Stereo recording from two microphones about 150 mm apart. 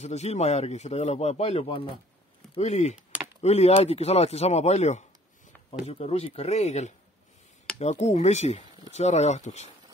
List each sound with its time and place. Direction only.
0.0 s speech: 45° left (ahead or behind)